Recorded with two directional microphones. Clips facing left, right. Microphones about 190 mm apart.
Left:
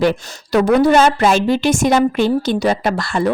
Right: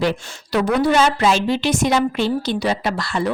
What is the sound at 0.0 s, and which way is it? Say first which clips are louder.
Speech: left 5 dB; 50° left (ahead or behind).